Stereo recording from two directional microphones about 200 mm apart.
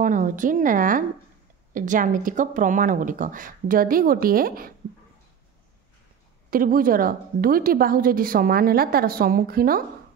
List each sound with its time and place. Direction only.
0.0 s speech: 40° right (ahead or behind)
6.5 s a woman's voice: 45° right (ahead or behind)